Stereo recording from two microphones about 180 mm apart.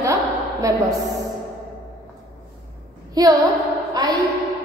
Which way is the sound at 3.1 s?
20° right (ahead or behind).